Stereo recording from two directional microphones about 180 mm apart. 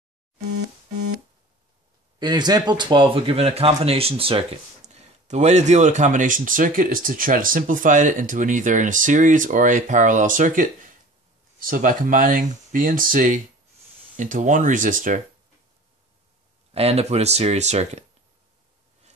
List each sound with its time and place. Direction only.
2.1 s speech: 25° right (ahead or behind); by 15.2 s 45° right (ahead or behind)
16.7 s speech: 35° right (ahead or behind)